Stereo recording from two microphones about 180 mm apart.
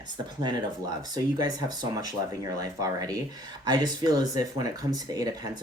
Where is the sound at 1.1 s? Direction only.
25° right (ahead or behind).